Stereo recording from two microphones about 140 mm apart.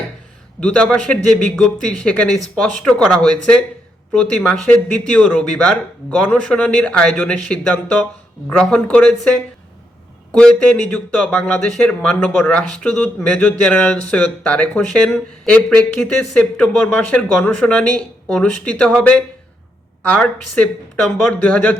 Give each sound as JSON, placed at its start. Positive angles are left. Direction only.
{"t": 0.6, "sound": "speech", "side_deg": 5}
{"t": 10.9, "sound": "speech", "side_deg": 5}